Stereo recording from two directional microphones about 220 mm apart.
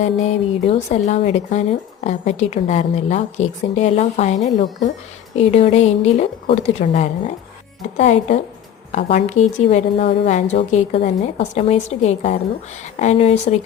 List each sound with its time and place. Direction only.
0.0 s a woman's voice: 30° left (ahead or behind)